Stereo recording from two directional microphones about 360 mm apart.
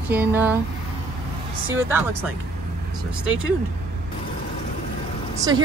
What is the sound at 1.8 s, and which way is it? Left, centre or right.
Speech, centre.